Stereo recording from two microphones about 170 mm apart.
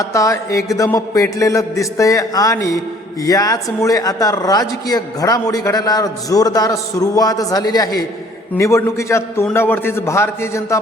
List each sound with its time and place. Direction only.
0.0 s a man's voice: 20° left (ahead or behind)